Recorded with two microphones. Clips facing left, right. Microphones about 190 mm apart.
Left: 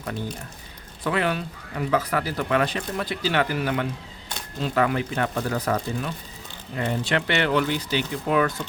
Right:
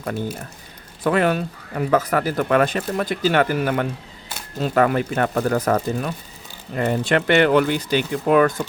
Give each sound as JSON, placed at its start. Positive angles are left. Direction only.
{"t": 1.0, "sound": "speech", "side_deg": -45}